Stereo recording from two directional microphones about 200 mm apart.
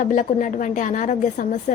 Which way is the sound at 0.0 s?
40° left (ahead or behind).